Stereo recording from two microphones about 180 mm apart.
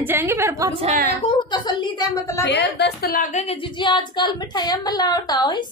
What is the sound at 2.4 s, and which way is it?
Speech, 65° left (ahead or behind).